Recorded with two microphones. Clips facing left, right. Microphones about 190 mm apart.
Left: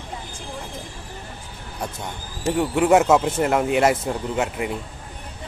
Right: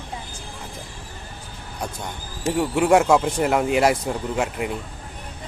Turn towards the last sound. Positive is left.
turn(degrees=0)  # may be behind; listen again after turning